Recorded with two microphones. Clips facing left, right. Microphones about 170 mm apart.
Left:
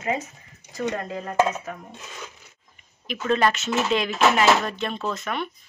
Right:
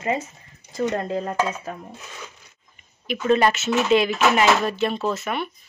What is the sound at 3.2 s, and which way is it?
Speech, 5° right (ahead or behind).